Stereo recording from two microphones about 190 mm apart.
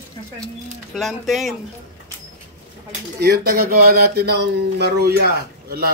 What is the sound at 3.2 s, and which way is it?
Speech, 55° right (ahead or behind).